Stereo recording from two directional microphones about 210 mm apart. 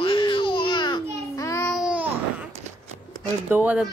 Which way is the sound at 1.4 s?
15° left (ahead or behind).